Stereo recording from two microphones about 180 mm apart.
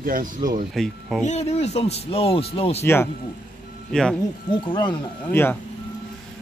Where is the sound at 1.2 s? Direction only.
35° left (ahead or behind).